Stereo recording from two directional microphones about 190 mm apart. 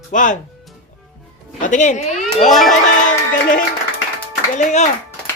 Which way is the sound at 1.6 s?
40° left (ahead or behind).